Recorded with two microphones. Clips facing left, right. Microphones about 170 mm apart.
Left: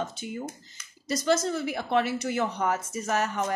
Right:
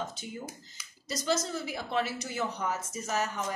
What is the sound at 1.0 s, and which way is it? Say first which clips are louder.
Speech: left 6 dB; 60° left (ahead or behind).